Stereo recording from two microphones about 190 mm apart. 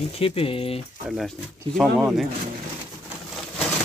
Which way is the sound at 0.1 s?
30° left (ahead or behind).